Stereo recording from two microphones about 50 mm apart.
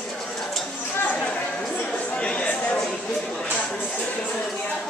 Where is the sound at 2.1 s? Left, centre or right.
Left.